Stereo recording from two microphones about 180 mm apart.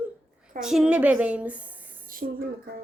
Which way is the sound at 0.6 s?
5° right (ahead or behind).